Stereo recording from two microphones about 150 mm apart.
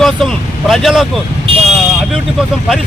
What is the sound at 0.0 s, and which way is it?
Speech, centre (ahead or behind).